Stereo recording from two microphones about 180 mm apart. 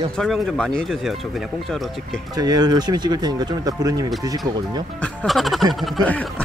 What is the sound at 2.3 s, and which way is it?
Speech, 20° right (ahead or behind).